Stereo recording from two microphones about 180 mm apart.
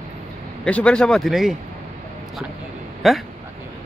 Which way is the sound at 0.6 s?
5° left (ahead or behind).